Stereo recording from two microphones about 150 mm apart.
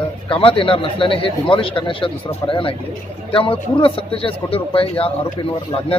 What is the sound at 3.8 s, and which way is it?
A man's voice, 35° left (ahead or behind).